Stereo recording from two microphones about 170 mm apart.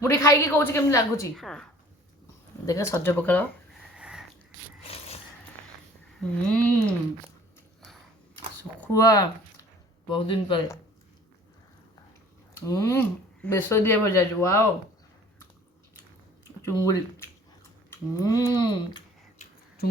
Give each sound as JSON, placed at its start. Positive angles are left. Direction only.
{"t": 0.0, "sound": "speech", "side_deg": 20}
{"t": 1.4, "sound": "speech", "side_deg": 0}
{"t": 2.6, "sound": "speech", "side_deg": 20}
{"t": 3.9, "sound": "sniff", "side_deg": -5}
{"t": 4.8, "sound": "a sound", "side_deg": 35}
{"t": 6.1, "sound": "speech", "side_deg": 10}
{"t": 8.8, "sound": "speech", "side_deg": 20}
{"t": 10.1, "sound": "speech", "side_deg": 30}
{"t": 12.5, "sound": "a sound", "side_deg": 20}
{"t": 13.4, "sound": "speech", "side_deg": 15}
{"t": 16.6, "sound": "speech", "side_deg": 20}
{"t": 17.9, "sound": "a sound", "side_deg": 20}